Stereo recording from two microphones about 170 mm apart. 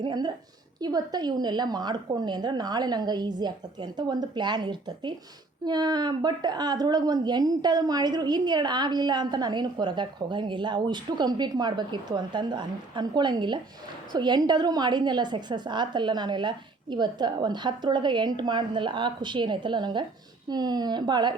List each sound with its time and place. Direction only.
0.0 s a woman's voice: 25° right (ahead or behind)